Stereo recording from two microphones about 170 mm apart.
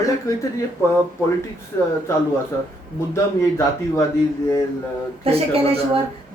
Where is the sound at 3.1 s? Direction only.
15° left (ahead or behind).